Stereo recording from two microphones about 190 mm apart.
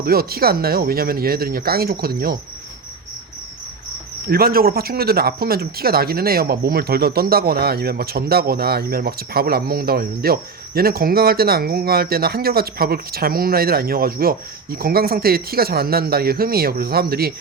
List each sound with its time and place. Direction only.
0.0 s speech: 55° right (ahead or behind)
4.3 s speech: 50° right (ahead or behind)